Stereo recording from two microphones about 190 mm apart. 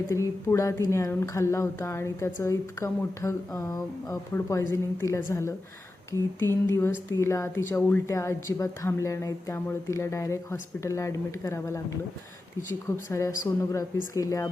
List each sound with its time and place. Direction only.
0.1 s speech: 15° left (ahead or behind)
13.1 s speech: 15° left (ahead or behind)